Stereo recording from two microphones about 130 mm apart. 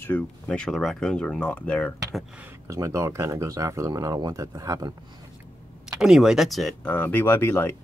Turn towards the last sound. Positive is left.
turn(degrees=15)  # may be behind; listen again after turning